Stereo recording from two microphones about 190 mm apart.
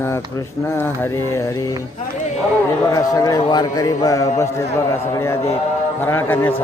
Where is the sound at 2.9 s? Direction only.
20° left (ahead or behind).